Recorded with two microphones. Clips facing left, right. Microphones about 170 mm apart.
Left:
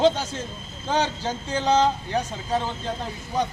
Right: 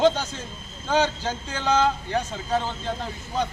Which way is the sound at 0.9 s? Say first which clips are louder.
Right 2 dB; 15° left (ahead or behind).